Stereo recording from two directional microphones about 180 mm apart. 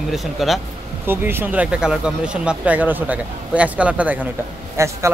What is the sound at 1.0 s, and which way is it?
A man's voice, 10° right (ahead or behind).